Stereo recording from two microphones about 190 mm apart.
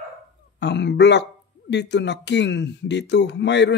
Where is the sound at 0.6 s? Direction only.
65° left (ahead or behind).